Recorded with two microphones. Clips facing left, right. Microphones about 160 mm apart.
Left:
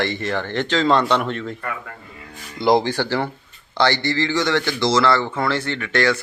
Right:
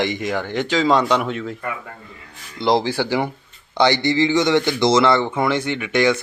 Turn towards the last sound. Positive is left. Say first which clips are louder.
# right 2 dB
turn(degrees=-15)  # may be behind; listen again after turning